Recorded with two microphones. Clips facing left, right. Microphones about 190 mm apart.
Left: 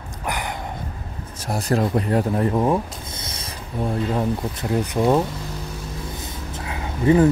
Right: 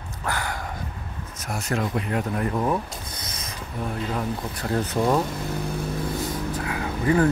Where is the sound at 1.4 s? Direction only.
35° left (ahead or behind).